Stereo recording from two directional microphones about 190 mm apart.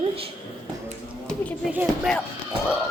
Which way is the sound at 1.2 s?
10° left (ahead or behind).